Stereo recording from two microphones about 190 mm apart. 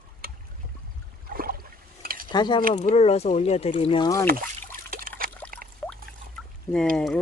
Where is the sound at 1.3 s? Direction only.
50° right (ahead or behind).